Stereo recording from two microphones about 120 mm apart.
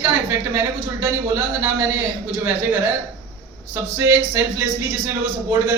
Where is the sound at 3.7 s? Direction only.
20° right (ahead or behind).